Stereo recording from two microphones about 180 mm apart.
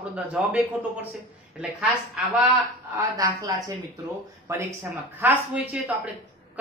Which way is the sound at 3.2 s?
20° right (ahead or behind).